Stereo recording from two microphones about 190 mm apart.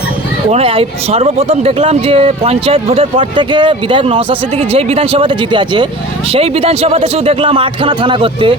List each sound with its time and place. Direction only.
0.5 s a man's voice: 30° right (ahead or behind)